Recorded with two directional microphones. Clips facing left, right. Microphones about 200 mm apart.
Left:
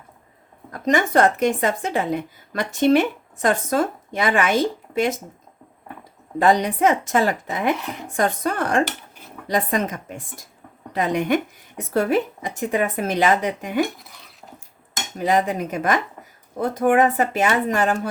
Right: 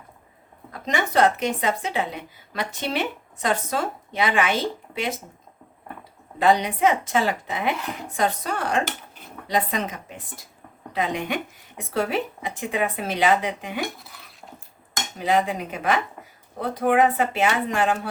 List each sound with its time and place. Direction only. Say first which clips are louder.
0.7 s speech: left 6 dB; 45° left (ahead or behind)
6.4 s speech: left 2 dB; 45° left (ahead or behind)
15.2 s speech: left 2 dB; 45° left (ahead or behind)